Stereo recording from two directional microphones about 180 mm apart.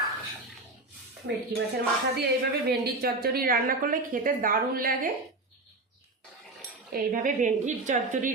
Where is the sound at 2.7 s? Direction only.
60° right (ahead or behind).